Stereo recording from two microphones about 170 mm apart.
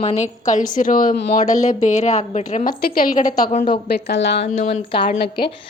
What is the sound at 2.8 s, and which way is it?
Speech, 60° left (ahead or behind).